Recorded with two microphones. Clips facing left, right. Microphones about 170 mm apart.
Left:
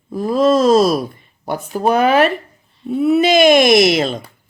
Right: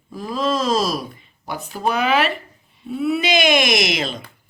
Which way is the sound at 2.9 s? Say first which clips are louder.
Left 7 dB; 50° left (ahead or behind).